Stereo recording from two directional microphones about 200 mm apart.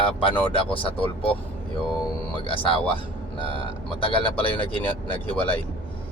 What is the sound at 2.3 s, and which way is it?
Speech, 25° left (ahead or behind).